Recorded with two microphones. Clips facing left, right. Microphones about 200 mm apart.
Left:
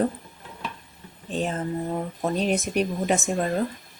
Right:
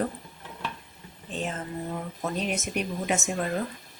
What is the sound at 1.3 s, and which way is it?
Speech, 35° left (ahead or behind).